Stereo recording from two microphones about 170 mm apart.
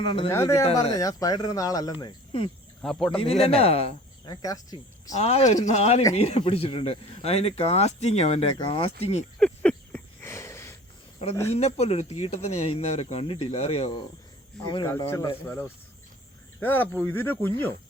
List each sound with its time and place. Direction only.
0.0 s speech: 30° left (ahead or behind)
0.3 s speech: 15° left (ahead or behind)
2.8 s speech: centre (ahead or behind)
3.1 s speech: 35° left (ahead or behind)
4.4 s speech: 20° left (ahead or behind)
5.1 s speech: 40° left (ahead or behind)
9.4 s a sound: 10° left (ahead or behind)
11.4 s speech: 40° left (ahead or behind)
14.8 s speech: 15° left (ahead or behind)